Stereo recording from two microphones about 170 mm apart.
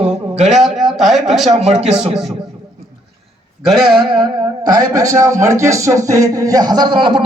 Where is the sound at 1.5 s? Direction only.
40° right (ahead or behind).